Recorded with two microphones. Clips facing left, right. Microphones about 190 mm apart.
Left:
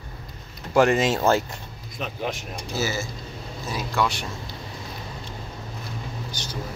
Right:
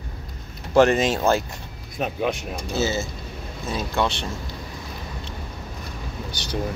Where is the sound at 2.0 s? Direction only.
50° right (ahead or behind).